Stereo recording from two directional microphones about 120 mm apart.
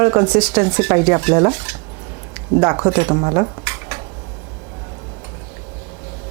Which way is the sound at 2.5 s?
25° right (ahead or behind).